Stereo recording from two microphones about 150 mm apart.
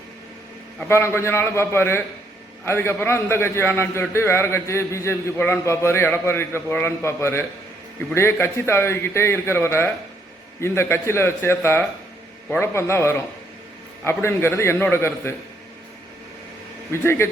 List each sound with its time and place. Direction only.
0.8 s a man's voice: 15° left (ahead or behind)
16.9 s a man's voice: 15° left (ahead or behind)